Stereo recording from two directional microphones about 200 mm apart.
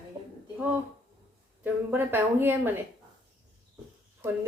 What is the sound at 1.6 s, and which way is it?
Speech, 10° right (ahead or behind).